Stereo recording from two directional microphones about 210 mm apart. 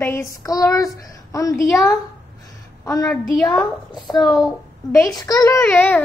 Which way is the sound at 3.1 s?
5° left (ahead or behind).